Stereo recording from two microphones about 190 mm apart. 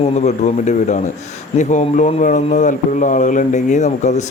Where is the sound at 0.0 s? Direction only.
35° left (ahead or behind).